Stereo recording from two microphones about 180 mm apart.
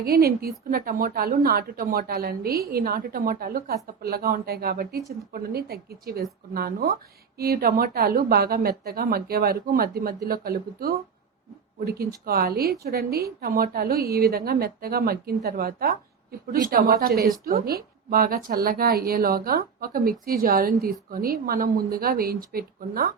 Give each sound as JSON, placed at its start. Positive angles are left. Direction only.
{"t": 0.0, "sound": "a woman's voice", "side_deg": -55}